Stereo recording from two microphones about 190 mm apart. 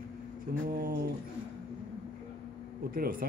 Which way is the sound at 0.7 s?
50° right (ahead or behind).